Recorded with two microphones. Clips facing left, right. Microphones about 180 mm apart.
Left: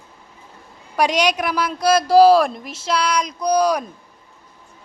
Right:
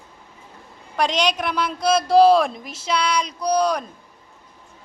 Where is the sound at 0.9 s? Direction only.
5° left (ahead or behind).